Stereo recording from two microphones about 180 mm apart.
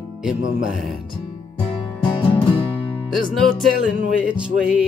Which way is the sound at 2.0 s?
30° left (ahead or behind).